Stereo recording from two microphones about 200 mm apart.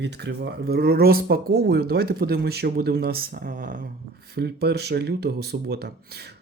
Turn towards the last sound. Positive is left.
turn(degrees=-55)  # may be behind; listen again after turning